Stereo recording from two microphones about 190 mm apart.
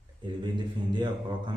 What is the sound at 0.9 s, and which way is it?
Speech, 25° right (ahead or behind).